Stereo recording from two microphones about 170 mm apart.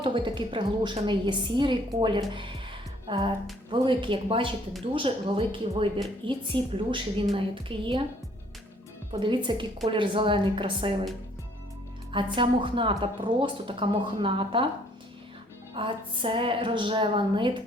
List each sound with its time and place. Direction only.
0.0 s a woman's voice: 30° right (ahead or behind)
9.1 s a woman's voice: 30° right (ahead or behind)
12.1 s a woman's voice: 30° right (ahead or behind)
15.7 s a woman's voice: 30° right (ahead or behind)